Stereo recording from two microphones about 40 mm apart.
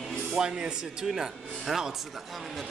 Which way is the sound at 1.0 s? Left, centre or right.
Centre.